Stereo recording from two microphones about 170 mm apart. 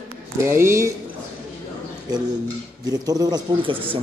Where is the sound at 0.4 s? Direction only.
15° right (ahead or behind).